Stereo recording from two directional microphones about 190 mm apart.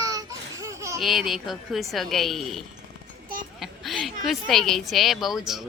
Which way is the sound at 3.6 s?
Centre (ahead or behind).